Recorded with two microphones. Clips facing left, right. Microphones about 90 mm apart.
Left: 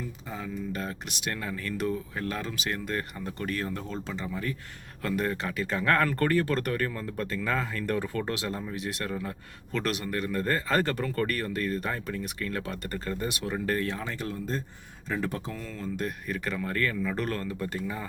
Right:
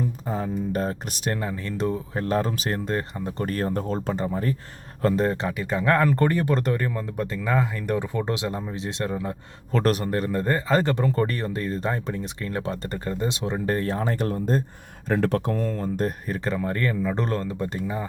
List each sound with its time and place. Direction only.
0.3 s speech: 40° right (ahead or behind)
5.0 s speech: 30° right (ahead or behind)
9.7 s speech: 40° right (ahead or behind)
15.1 s speech: 70° right (ahead or behind); by 18.1 s 25° right (ahead or behind)